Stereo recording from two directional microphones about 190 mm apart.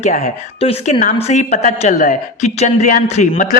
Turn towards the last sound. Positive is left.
turn(degrees=40)  # may be behind; listen again after turning